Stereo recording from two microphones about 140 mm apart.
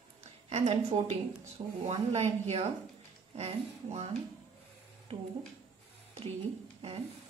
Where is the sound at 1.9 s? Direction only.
50° right (ahead or behind).